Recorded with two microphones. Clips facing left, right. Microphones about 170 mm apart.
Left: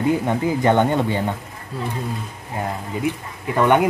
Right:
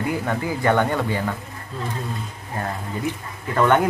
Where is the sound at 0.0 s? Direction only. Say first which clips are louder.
Left 5 dB; 20° left (ahead or behind).